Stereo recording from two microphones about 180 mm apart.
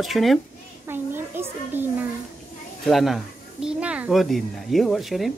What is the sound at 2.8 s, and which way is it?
Speech, centre (ahead or behind).